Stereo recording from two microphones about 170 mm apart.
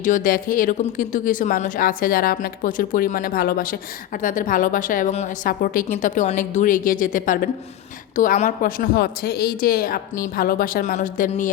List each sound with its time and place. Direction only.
0.0 s a woman's voice: 50° left (ahead or behind)